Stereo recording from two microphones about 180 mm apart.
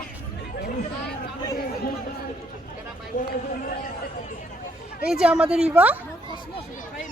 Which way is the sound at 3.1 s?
45° left (ahead or behind).